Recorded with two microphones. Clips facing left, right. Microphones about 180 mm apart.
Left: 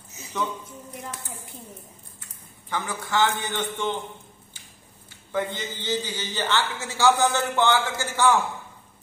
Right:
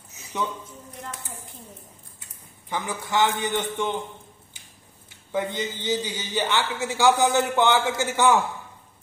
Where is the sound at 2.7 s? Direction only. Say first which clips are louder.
Right 1 dB; 15° right (ahead or behind).